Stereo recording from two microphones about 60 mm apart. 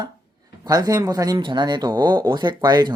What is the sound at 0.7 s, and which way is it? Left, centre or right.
Speech, right.